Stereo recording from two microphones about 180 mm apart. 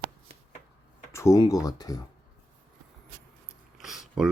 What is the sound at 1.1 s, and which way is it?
Speech, 15° left (ahead or behind).